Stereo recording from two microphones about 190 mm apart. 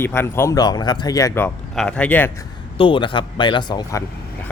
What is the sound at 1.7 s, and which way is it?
Speech, 5° left (ahead or behind).